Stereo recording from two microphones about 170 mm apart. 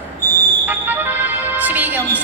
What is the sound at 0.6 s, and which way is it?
Music, 10° right (ahead or behind).